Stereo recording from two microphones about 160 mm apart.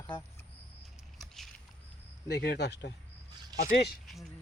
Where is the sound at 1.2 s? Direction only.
Centre (ahead or behind).